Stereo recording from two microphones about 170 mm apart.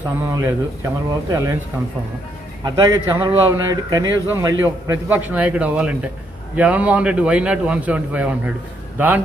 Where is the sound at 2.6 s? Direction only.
25° right (ahead or behind).